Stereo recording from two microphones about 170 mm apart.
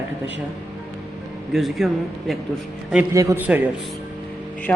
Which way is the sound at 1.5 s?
Centre (ahead or behind).